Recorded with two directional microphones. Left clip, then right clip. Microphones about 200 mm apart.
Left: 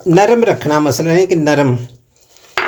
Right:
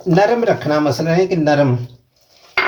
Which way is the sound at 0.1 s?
40° left (ahead or behind).